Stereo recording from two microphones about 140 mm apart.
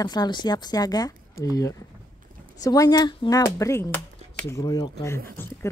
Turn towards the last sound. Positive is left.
turn(degrees=25)  # may be behind; listen again after turning